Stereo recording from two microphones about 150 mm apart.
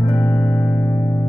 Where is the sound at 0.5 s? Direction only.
10° left (ahead or behind).